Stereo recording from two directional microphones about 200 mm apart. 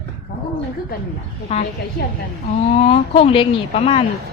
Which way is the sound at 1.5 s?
30° left (ahead or behind).